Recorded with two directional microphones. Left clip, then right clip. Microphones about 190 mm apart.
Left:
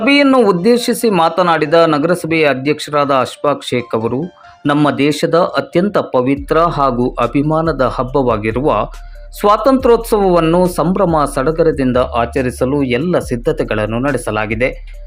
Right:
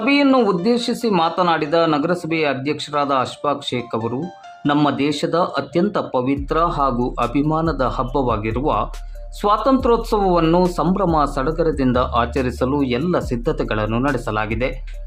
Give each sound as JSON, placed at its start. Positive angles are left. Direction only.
{"t": 0.0, "sound": "speech", "side_deg": 20}